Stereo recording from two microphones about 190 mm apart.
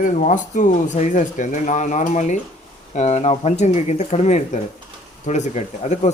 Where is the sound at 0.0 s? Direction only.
40° left (ahead or behind).